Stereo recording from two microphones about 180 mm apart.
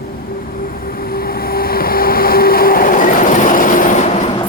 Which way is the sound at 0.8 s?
55° left (ahead or behind).